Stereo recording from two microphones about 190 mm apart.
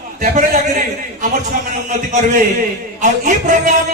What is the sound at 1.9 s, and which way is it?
A man's voice, 40° right (ahead or behind).